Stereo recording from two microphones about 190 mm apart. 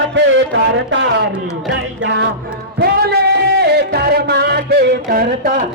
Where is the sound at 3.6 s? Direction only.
60° right (ahead or behind).